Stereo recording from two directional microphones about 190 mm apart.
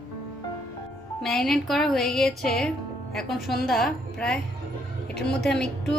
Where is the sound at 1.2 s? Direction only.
Centre (ahead or behind).